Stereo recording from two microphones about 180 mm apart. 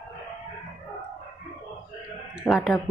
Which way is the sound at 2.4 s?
5° right (ahead or behind).